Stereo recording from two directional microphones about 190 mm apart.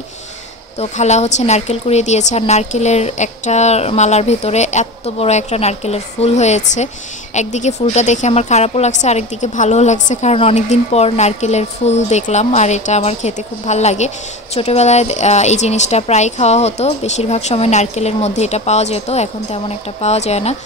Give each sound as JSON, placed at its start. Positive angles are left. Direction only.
{"t": 0.7, "sound": "a woman's voice", "side_deg": 35}